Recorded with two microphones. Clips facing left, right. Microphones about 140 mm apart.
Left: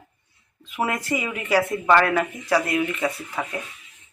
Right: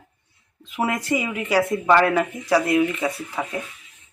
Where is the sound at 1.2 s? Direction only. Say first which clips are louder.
Right 1 dB; 15° right (ahead or behind).